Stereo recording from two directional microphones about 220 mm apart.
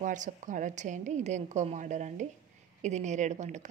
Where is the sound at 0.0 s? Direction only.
35° right (ahead or behind).